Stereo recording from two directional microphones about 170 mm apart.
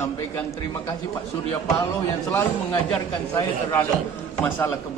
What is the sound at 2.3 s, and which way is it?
Speech, 10° left (ahead or behind).